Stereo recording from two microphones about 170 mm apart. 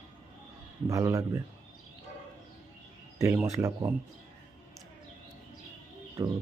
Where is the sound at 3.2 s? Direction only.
15° right (ahead or behind).